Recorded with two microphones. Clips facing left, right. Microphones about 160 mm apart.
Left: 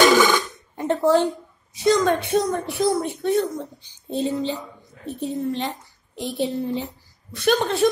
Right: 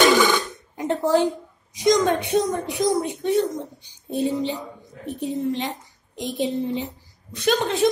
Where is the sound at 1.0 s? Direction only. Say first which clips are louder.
Left 1 dB; 15° right (ahead or behind).